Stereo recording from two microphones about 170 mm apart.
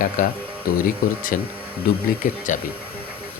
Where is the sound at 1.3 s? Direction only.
55° left (ahead or behind).